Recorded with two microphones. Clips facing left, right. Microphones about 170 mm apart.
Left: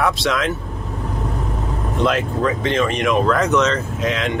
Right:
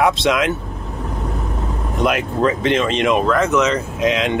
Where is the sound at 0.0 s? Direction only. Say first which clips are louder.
Right 3 dB; 20° right (ahead or behind).